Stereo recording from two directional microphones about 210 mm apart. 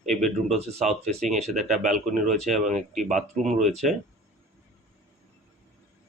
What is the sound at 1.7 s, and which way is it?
Speech, 35° right (ahead or behind).